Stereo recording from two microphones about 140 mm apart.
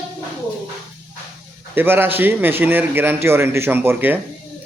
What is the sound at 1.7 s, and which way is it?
A man's voice, 15° right (ahead or behind).